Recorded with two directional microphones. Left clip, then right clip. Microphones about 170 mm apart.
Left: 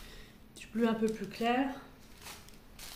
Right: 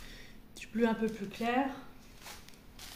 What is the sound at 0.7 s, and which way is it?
Speech, 25° right (ahead or behind).